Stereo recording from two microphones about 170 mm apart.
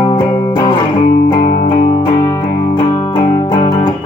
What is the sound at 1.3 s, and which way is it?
Music, 55° left (ahead or behind).